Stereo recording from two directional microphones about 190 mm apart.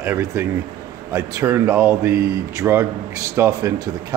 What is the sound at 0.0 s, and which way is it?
Speech, 15° right (ahead or behind).